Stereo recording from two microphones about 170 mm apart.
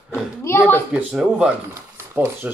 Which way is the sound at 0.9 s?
5° right (ahead or behind).